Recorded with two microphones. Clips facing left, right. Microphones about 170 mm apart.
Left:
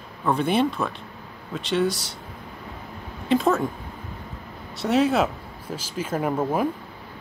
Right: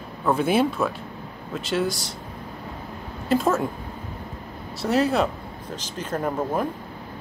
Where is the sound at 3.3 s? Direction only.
Centre (ahead or behind).